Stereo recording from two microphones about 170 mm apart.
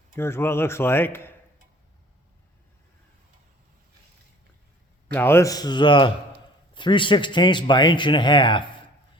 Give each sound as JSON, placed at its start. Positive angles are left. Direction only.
{"t": 0.2, "sound": "speech", "side_deg": 15}
{"t": 5.1, "sound": "a man's voice", "side_deg": 15}